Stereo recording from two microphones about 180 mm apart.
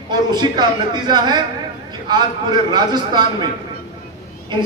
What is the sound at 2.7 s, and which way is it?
Speech, 25° right (ahead or behind).